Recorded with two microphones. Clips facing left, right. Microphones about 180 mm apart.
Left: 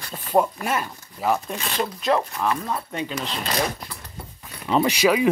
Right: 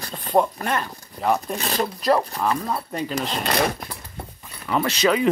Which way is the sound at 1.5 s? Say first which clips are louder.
Right 2 dB; 40° right (ahead or behind).